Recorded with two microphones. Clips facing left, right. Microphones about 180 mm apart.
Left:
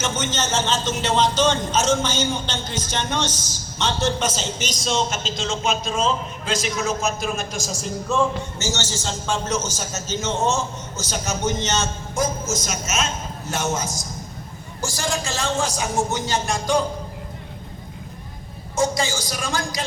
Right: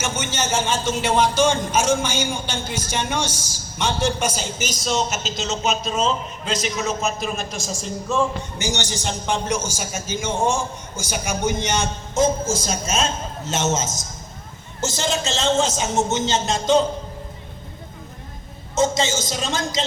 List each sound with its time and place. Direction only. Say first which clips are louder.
0.0 s a man's voice: even; 10° right (ahead or behind)
8.5 s a man's voice: right 1 dB; 15° right (ahead or behind)
12.1 s a man's voice: right 5 dB; 30° right (ahead or behind)
18.8 s a man's voice: right 2 dB; 20° right (ahead or behind)